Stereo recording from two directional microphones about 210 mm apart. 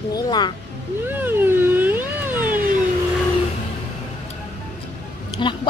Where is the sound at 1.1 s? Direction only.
10° right (ahead or behind).